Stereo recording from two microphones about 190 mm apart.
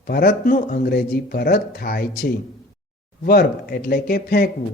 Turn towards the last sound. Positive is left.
turn(degrees=55)  # may be behind; listen again after turning